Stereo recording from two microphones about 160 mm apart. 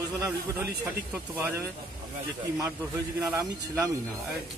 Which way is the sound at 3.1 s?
10° right (ahead or behind).